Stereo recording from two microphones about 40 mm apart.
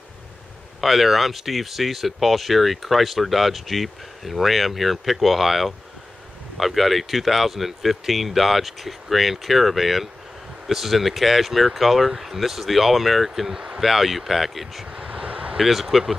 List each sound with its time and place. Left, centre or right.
0.7 s speech: centre
14.9 s vehicle: right
15.5 s speech: centre